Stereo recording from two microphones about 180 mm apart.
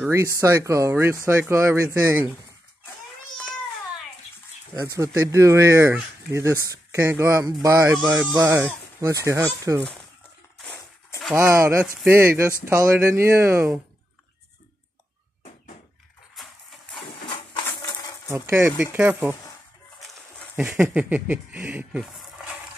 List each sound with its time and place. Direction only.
0.0 s speech: 15° right (ahead or behind)
4.7 s speech: 20° right (ahead or behind)
11.3 s speech: 15° right (ahead or behind)
16.3 s music: centre (ahead or behind)
17.7 s rattle: 20° left (ahead or behind)
18.3 s speech: 15° right (ahead or behind)
20.5 s speech: 5° right (ahead or behind)